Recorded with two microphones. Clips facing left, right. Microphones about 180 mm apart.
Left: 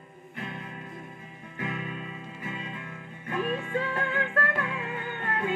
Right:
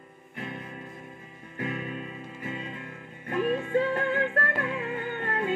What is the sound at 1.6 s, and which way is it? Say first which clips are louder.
Music: right 2 dB; 45° right (ahead or behind).